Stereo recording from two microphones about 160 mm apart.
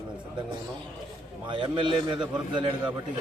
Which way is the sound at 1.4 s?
30° right (ahead or behind).